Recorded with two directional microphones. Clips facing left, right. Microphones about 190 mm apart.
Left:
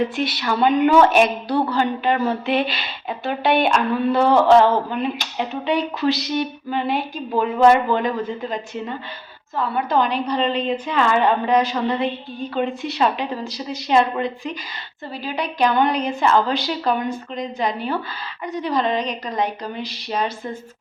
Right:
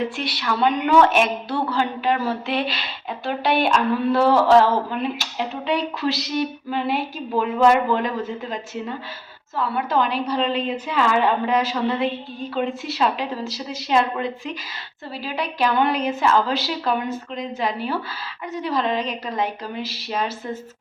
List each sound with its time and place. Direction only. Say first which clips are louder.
0.2 s speech: left 2 dB; centre (ahead or behind)